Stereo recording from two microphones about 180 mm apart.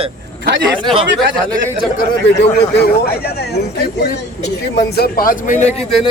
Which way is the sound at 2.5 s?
65° left (ahead or behind).